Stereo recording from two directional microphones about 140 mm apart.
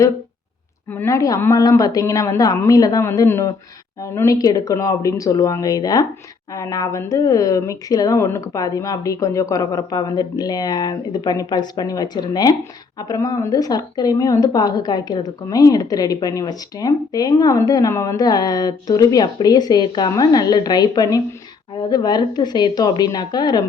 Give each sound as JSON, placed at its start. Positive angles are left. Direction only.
{"t": 0.9, "sound": "speech", "side_deg": 20}